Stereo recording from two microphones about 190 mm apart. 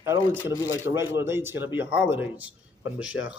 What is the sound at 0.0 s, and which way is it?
A man's voice, 15° right (ahead or behind).